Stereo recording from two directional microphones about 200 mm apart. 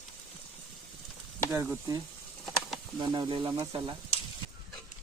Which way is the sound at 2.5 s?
Centre (ahead or behind).